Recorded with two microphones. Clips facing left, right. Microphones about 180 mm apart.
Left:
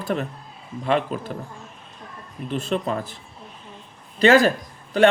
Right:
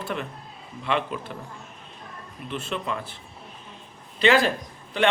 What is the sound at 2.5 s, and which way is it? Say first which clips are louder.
Speech: left 6 dB; 40° left (ahead or behind).